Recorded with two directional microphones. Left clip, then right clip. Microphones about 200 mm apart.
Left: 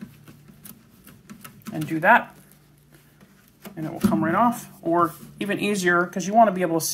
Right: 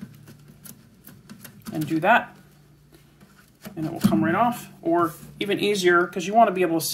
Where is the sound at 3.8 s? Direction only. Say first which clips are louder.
Right 1 dB; 5° right (ahead or behind).